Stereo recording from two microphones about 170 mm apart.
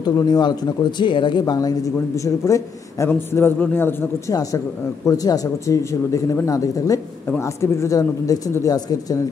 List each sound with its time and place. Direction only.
0.0 s speech: 25° left (ahead or behind)